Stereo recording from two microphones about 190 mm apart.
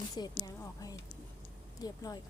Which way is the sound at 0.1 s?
20° left (ahead or behind).